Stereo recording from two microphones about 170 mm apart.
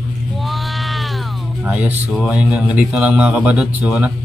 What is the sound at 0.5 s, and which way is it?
Sheep, centre (ahead or behind).